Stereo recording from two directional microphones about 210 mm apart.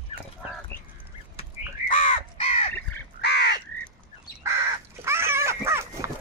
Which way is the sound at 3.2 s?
50° left (ahead or behind).